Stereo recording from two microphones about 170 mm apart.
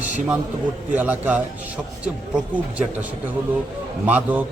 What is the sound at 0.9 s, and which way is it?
Speech, 10° right (ahead or behind).